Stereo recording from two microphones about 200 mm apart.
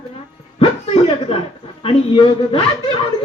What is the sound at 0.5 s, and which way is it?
A woman's voice, 30° left (ahead or behind).